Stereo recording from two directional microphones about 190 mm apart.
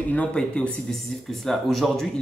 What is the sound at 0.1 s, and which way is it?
Speech, 5° left (ahead or behind).